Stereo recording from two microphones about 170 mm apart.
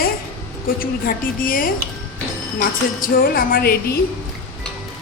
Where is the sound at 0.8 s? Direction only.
55° left (ahead or behind).